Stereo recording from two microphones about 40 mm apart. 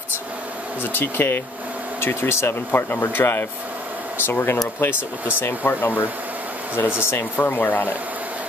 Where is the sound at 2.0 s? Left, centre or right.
Left.